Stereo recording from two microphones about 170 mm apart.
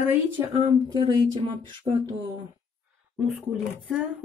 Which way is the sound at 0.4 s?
20° right (ahead or behind).